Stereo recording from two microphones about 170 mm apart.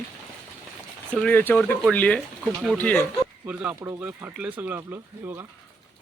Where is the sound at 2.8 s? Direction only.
10° left (ahead or behind).